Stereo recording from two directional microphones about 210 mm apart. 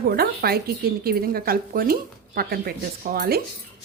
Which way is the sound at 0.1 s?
45° right (ahead or behind).